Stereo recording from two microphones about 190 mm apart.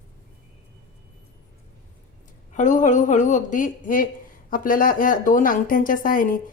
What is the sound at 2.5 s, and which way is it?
A woman's voice, 40° left (ahead or behind).